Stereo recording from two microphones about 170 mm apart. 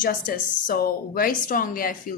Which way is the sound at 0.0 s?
55° left (ahead or behind).